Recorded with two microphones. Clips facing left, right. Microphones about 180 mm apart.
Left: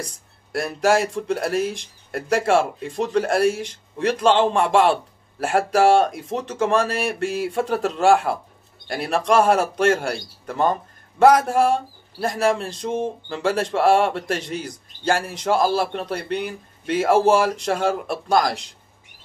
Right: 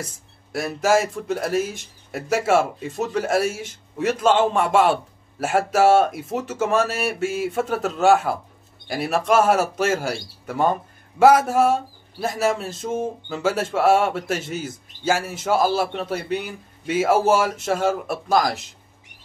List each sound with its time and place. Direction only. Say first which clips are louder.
0.0 s a man's voice: left 1 dB; centre (ahead or behind)